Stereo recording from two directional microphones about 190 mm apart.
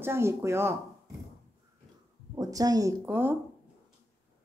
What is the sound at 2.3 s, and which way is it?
A woman's voice, 20° right (ahead or behind).